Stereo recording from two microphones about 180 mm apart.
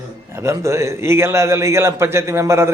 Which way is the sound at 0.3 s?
15° right (ahead or behind).